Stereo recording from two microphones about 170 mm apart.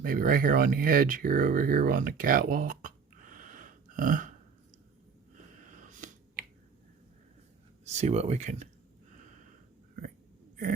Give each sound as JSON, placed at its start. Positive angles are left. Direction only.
{"t": 0.0, "sound": "speech", "side_deg": -55}
{"t": 5.7, "sound": "a sound", "side_deg": -50}
{"t": 7.9, "sound": "speech", "side_deg": -40}